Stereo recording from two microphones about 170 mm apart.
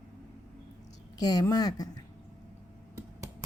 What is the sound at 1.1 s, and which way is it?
Speech, 20° left (ahead or behind).